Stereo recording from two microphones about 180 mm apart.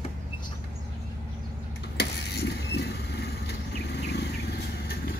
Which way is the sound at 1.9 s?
65° left (ahead or behind).